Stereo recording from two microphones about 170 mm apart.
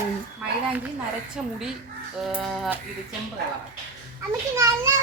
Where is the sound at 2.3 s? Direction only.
5° right (ahead or behind).